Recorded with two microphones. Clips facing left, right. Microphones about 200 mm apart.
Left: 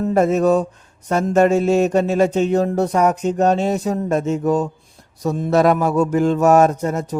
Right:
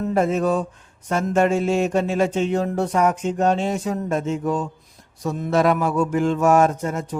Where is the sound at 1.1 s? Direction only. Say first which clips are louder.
Left 4 dB; 40° left (ahead or behind).